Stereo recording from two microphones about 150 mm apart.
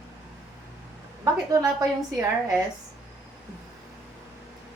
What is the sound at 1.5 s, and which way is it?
A woman's voice, 20° right (ahead or behind).